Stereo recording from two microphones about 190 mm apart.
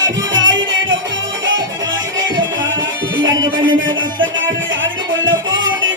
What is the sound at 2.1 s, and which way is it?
Music, 80° right.